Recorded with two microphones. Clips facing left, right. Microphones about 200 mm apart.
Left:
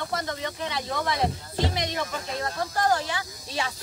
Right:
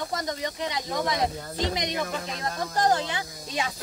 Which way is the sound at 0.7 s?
20° right (ahead or behind).